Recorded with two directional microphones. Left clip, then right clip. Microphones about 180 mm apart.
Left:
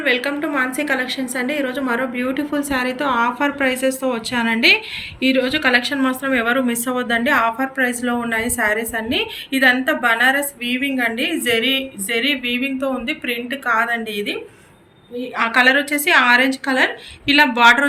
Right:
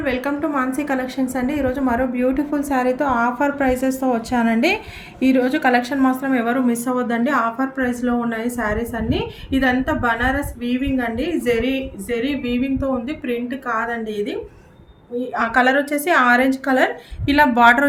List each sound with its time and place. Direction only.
0.0 s a woman's voice: 50° right (ahead or behind); by 14.3 s 35° right (ahead or behind)
15.4 s a woman's voice: 45° right (ahead or behind)